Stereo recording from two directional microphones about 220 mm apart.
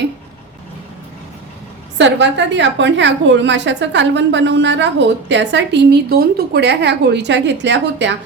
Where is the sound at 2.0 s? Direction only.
55° right (ahead or behind).